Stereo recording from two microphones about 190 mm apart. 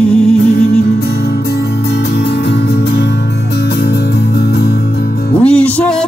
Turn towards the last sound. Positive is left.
turn(degrees=5)  # may be behind; listen again after turning